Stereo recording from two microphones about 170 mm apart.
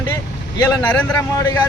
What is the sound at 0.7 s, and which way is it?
Speech, 10° left (ahead or behind).